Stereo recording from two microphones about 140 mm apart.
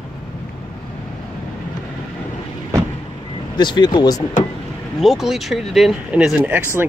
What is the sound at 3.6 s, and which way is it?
Speech, 30° left (ahead or behind).